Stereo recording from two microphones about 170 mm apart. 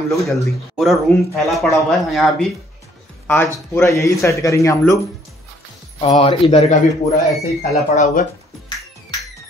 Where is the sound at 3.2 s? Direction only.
10° left (ahead or behind).